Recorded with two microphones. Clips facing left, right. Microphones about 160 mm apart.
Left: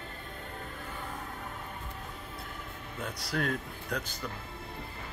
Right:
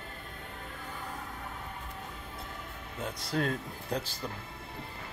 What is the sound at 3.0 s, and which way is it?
Speech, 25° right (ahead or behind).